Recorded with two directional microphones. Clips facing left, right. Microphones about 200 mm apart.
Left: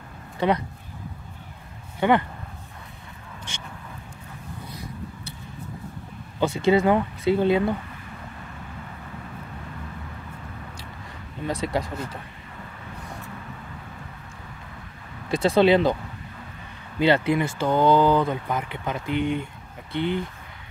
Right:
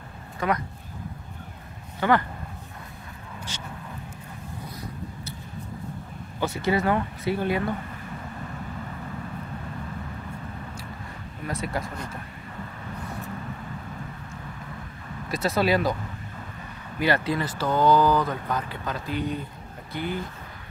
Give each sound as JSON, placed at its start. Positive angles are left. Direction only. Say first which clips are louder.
{"t": 0.4, "sound": "speech", "louder": "left 4 dB", "side_deg": 30}
{"t": 2.0, "sound": "speech", "louder": "left 2 dB", "side_deg": 20}
{"t": 6.4, "sound": "speech", "louder": "left 5 dB", "side_deg": 25}
{"t": 11.5, "sound": "speech", "louder": "left 4 dB", "side_deg": 25}
{"t": 15.2, "sound": "speech", "louder": "left 6 dB", "side_deg": 30}
{"t": 17.0, "sound": "speech", "louder": "left 4 dB", "side_deg": 25}